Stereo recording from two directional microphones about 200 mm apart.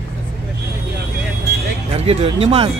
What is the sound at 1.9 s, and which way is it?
Speech, 30° right (ahead or behind).